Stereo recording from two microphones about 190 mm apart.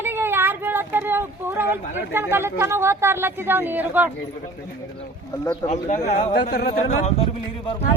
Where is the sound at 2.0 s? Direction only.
10° right (ahead or behind).